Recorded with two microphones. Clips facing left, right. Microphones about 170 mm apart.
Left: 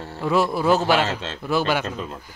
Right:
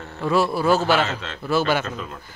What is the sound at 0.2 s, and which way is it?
Speech, 20° left (ahead or behind).